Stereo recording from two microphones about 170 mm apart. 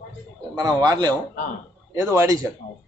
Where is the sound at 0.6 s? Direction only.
20° right (ahead or behind).